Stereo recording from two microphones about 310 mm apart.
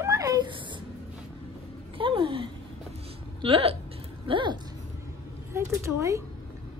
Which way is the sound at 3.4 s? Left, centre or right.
Centre.